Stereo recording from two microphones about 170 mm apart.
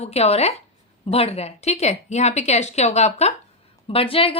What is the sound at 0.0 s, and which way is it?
A woman's voice, 35° left (ahead or behind).